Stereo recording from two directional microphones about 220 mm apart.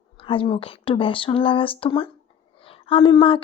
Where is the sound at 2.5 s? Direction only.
25° left (ahead or behind).